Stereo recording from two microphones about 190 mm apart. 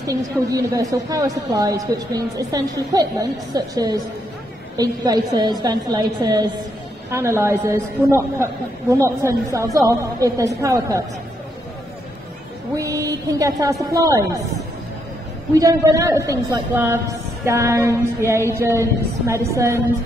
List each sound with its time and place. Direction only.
0.0 s a woman's voice: 20° right (ahead or behind)
12.7 s a woman's voice: 15° right (ahead or behind)
15.5 s a woman's voice: 20° right (ahead or behind)